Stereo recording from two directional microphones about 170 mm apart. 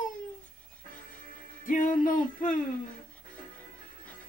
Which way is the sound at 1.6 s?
50° left (ahead or behind).